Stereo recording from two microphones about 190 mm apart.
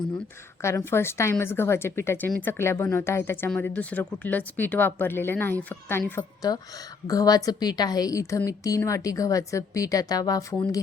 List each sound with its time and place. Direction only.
0.6 s a woman's voice: 15° left (ahead or behind)